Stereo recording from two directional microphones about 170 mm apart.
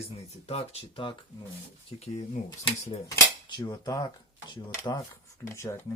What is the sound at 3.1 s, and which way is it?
Speech, 25° left (ahead or behind).